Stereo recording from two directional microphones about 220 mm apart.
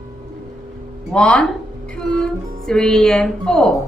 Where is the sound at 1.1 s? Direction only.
5° left (ahead or behind).